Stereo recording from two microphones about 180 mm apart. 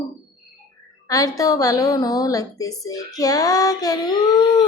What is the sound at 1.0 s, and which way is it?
A woman's voice, 20° left (ahead or behind).